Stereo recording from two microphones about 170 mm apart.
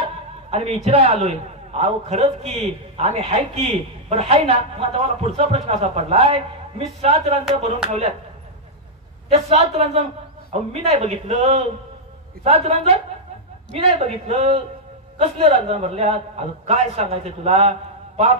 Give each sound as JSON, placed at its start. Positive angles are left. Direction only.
{"t": 0.0, "sound": "a man's voice", "side_deg": -35}
{"t": 9.3, "sound": "a man's voice", "side_deg": -40}